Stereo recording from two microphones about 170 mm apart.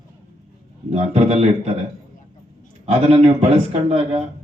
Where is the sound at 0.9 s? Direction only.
35° right (ahead or behind).